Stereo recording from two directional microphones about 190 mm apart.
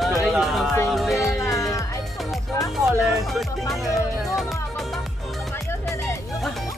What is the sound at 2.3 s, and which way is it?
Speech, centre (ahead or behind).